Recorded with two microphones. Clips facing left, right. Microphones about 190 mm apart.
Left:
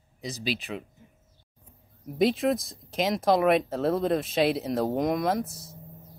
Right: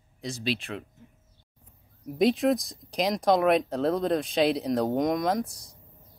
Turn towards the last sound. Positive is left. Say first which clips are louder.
# even
turn(degrees=0)  # may be behind; listen again after turning